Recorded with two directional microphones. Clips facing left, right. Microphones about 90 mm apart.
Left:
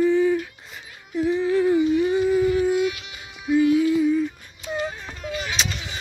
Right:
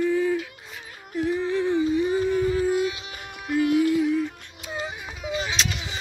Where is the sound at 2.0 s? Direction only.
5° left (ahead or behind).